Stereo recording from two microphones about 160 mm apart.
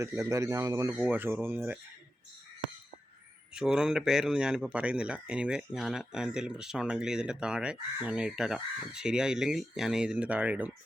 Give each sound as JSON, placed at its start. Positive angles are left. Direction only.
{"t": 0.0, "sound": "speech", "side_deg": -20}
{"t": 3.5, "sound": "speech", "side_deg": -5}